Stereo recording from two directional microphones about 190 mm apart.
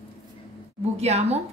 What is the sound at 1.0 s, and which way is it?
Speech, 35° right (ahead or behind).